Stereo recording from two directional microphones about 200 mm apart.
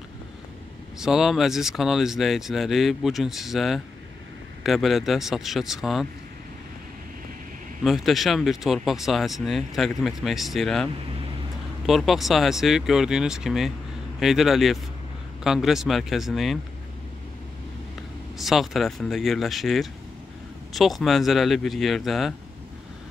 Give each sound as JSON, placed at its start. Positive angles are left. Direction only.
{"t": 0.9, "sound": "speech", "side_deg": 0}
{"t": 7.8, "sound": "speech", "side_deg": 0}
{"t": 18.4, "sound": "speech", "side_deg": 0}